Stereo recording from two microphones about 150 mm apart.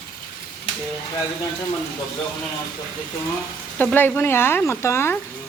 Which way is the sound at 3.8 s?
10° left (ahead or behind).